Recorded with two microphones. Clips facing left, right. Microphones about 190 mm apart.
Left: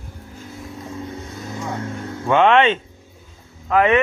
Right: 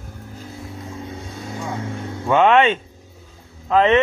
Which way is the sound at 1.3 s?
30° right (ahead or behind).